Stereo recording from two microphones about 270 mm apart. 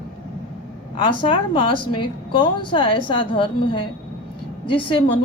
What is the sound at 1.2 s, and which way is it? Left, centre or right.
A woman's voice, centre.